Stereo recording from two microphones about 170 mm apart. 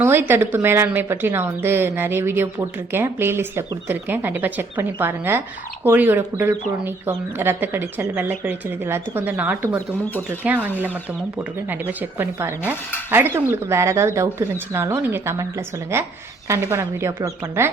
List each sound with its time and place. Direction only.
0.0 s speech: 10° right (ahead or behind)
11.7 s speech: 10° right (ahead or behind)